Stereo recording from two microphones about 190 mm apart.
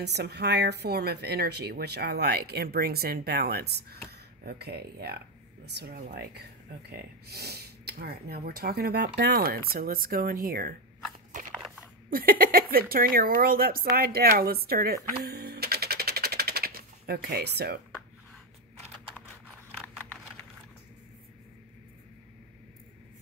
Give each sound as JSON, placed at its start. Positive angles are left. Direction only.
{"t": 0.0, "sound": "speech", "side_deg": -60}
{"t": 11.5, "sound": "a sound", "side_deg": 0}
{"t": 12.1, "sound": "speech", "side_deg": -50}
{"t": 15.2, "sound": "typewriter", "side_deg": -55}